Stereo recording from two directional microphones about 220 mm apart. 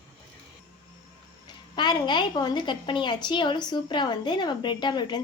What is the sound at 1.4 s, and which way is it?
A woman's voice, 20° left (ahead or behind).